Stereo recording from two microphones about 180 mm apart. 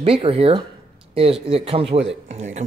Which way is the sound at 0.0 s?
30° right (ahead or behind).